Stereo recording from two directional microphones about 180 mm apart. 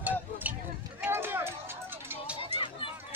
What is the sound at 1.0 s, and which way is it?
Run, 10° right (ahead or behind).